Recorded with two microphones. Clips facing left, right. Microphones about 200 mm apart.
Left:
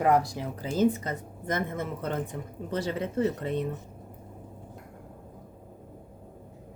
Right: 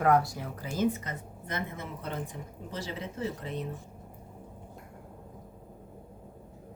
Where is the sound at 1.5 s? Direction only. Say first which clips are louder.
Left 7 dB; 50° left (ahead or behind).